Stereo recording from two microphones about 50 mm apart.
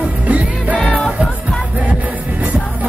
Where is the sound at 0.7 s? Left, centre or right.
Left.